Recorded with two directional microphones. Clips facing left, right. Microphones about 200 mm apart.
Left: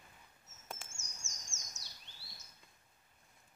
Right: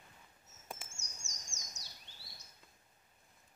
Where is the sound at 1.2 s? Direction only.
15° right (ahead or behind).